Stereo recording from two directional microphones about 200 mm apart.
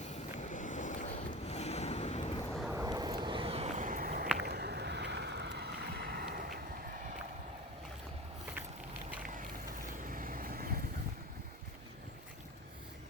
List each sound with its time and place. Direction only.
0.0 s vehicle: 35° left (ahead or behind)
2.6 s vehicle: 5° right (ahead or behind)
2.8 s a sound: 20° right (ahead or behind); by 4.3 s 45° right (ahead or behind)
4.4 s boat: 55° right (ahead or behind)
10.1 s vehicle: 45° right (ahead or behind)